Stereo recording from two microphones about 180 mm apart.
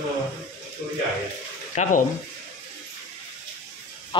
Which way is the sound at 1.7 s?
40° left (ahead or behind).